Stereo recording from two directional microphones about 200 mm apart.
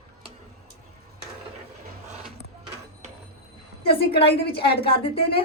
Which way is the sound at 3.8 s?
25° left (ahead or behind).